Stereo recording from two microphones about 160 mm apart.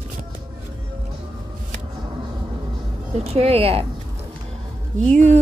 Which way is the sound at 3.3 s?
40° right (ahead or behind).